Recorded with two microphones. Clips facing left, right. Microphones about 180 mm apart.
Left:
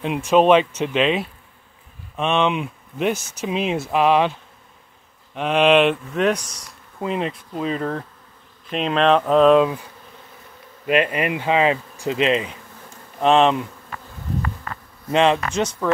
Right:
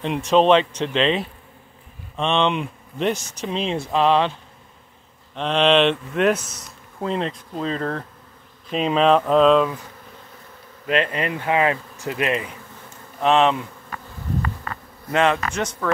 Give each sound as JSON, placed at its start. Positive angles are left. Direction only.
{"t": 0.0, "sound": "speech", "side_deg": 5}
{"t": 5.3, "sound": "speech", "side_deg": 10}
{"t": 7.1, "sound": "speech", "side_deg": 10}
{"t": 8.6, "sound": "speech", "side_deg": -5}
{"t": 9.2, "sound": "speech", "side_deg": 5}
{"t": 10.9, "sound": "speech", "side_deg": 15}
{"t": 15.0, "sound": "speech", "side_deg": 20}